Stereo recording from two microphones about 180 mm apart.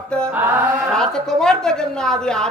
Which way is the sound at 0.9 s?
5° left (ahead or behind).